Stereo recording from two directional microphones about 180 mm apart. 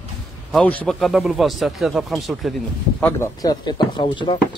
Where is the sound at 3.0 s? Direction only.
15° left (ahead or behind).